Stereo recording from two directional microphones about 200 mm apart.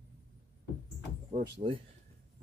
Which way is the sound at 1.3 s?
35° right (ahead or behind).